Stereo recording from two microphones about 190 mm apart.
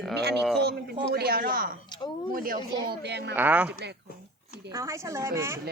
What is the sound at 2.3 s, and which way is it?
A woman's voice, 50° right (ahead or behind).